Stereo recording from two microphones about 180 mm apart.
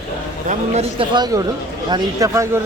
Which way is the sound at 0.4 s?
35° right (ahead or behind).